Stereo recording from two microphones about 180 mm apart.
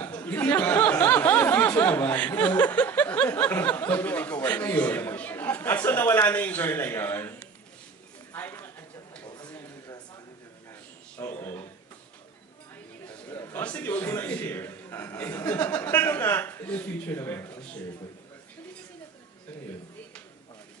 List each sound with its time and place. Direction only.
0.0 s speech: 10° left (ahead or behind)
8.3 s a sound: 10° left (ahead or behind)
11.1 s a man's voice: 15° left (ahead or behind)
13.0 s a man's voice: 10° left (ahead or behind)